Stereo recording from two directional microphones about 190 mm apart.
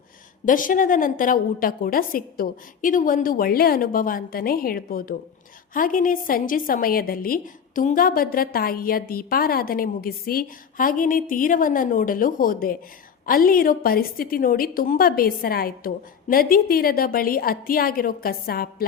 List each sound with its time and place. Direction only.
0.4 s a woman's voice: 45° left (ahead or behind)